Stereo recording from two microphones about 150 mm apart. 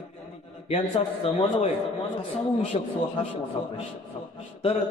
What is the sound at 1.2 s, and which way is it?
Speech, 40° left (ahead or behind).